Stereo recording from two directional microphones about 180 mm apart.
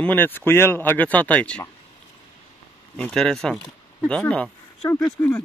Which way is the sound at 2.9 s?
5° left (ahead or behind).